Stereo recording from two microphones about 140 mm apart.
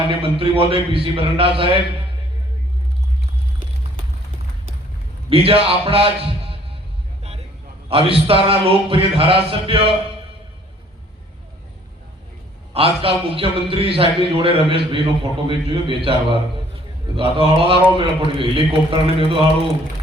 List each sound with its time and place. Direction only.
0.1 s a man's voice: 40° right (ahead or behind)
5.3 s a man's voice: 40° right (ahead or behind)
7.9 s a man's voice: 40° right (ahead or behind)
12.7 s a man's voice: 40° right (ahead or behind)